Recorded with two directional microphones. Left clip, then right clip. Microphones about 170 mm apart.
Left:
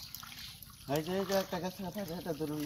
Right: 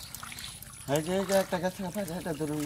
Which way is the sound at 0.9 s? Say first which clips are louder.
Right 6 dB; 30° right (ahead or behind).